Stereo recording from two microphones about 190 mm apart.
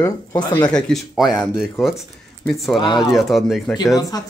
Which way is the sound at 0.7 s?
5° left (ahead or behind).